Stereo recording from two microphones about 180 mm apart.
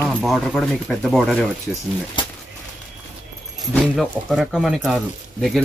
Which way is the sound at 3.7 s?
Centre (ahead or behind).